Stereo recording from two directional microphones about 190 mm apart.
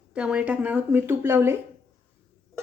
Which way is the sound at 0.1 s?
5° right (ahead or behind).